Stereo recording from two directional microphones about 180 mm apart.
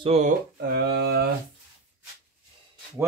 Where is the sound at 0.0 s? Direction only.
35° right (ahead or behind).